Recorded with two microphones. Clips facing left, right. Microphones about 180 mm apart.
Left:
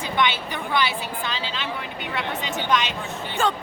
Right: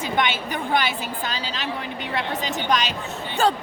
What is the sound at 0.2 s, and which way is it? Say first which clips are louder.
Speech: left 1 dB; 45° right (ahead or behind).